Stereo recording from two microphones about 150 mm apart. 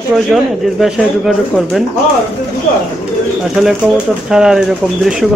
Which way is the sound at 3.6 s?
5° right (ahead or behind).